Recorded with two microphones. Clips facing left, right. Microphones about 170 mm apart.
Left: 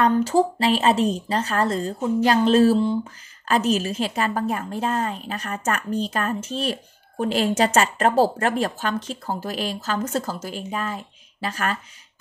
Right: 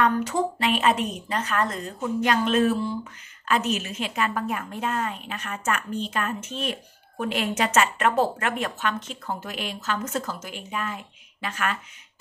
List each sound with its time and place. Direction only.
0.0 s speech: 30° left (ahead or behind)